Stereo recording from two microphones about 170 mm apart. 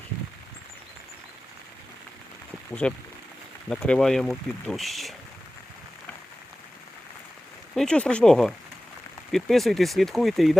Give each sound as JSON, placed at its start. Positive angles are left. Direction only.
{"t": 2.8, "sound": "speech", "side_deg": 5}
{"t": 7.8, "sound": "speech", "side_deg": 5}